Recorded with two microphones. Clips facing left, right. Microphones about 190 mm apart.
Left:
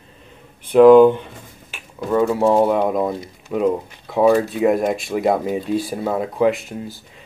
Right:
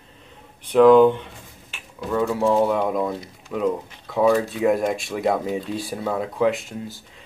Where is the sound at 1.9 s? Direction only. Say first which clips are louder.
Left 5 dB; 50° left (ahead or behind).